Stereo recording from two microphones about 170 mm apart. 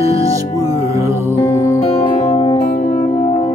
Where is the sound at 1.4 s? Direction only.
15° left (ahead or behind).